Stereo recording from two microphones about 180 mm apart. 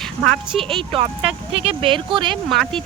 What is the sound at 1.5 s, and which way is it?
Speech, 30° right (ahead or behind).